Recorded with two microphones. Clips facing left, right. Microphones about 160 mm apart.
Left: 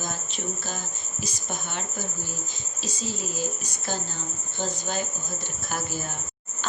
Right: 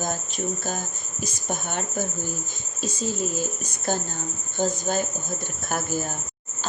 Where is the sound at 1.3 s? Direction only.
50° right (ahead or behind).